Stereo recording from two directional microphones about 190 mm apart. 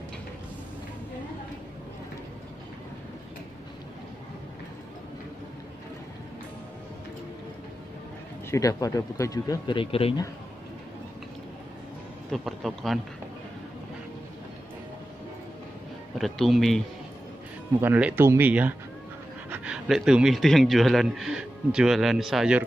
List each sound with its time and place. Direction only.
8.5 s speech: 15° left (ahead or behind)
12.3 s a man's voice: centre (ahead or behind)
16.2 s a man's voice: centre (ahead or behind)